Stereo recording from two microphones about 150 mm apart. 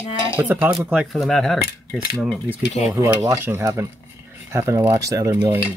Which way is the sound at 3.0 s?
20° right (ahead or behind).